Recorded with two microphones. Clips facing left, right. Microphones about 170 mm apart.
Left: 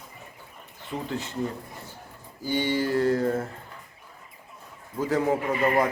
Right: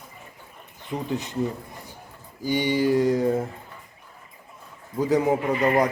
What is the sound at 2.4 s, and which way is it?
Speech, 15° right (ahead or behind).